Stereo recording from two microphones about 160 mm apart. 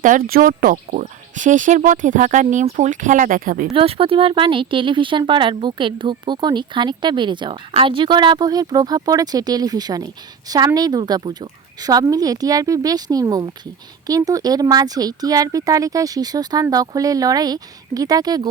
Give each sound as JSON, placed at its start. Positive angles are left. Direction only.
{"t": 0.0, "sound": "speech", "side_deg": -60}
{"t": 3.8, "sound": "speech", "side_deg": -35}